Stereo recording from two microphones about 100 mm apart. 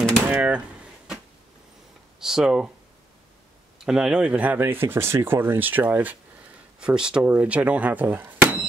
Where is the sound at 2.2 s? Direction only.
5° right (ahead or behind).